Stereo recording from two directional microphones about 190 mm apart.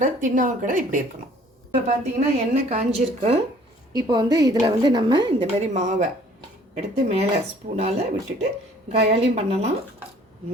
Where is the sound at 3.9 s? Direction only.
25° right (ahead or behind).